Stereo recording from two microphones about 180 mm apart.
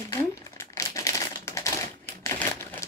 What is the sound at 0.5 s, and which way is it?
Crumpling, 15° left (ahead or behind).